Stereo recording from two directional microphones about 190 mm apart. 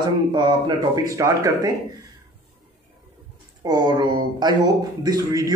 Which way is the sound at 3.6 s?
20° right (ahead or behind).